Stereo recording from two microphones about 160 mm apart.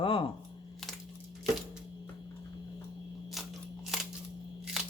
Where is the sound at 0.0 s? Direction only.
35° left (ahead or behind).